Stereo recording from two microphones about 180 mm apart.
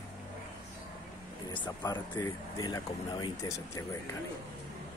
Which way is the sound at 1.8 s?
20° left (ahead or behind).